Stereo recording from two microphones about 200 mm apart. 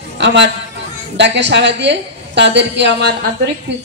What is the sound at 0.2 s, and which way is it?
A woman's voice, 60° right (ahead or behind).